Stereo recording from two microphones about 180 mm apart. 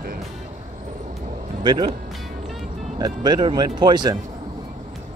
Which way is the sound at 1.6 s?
25° right (ahead or behind).